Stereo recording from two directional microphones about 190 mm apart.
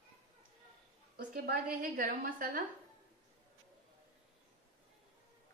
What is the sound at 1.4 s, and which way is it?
A woman's voice, 50° right (ahead or behind).